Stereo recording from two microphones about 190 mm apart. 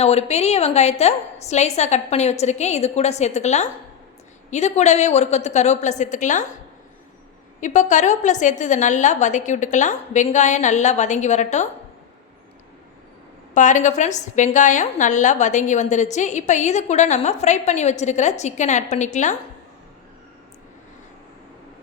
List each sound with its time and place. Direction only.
0.0 s a woman's voice: 35° left (ahead or behind)
7.6 s a woman's voice: 40° left (ahead or behind)
13.5 s a woman's voice: 40° left (ahead or behind)